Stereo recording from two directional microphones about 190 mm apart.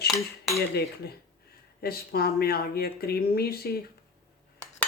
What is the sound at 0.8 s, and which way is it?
Speech, 55° left (ahead or behind).